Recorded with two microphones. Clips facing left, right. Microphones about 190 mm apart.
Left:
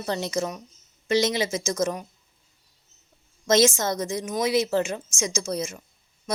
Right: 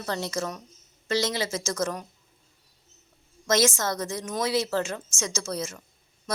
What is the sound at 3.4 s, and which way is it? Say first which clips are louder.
A woman's voice: left 4 dB; 20° left (ahead or behind).